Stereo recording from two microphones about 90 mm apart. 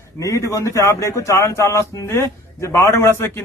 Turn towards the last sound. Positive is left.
turn(degrees=30)  # may be behind; listen again after turning